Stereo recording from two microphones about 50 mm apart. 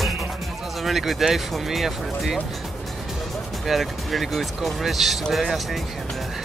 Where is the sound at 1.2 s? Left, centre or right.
Centre.